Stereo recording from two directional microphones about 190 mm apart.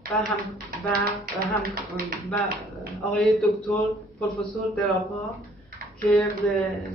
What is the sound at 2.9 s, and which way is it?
Speech, centre (ahead or behind).